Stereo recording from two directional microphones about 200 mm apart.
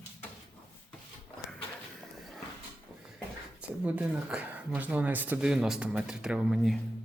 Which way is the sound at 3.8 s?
5° right (ahead or behind).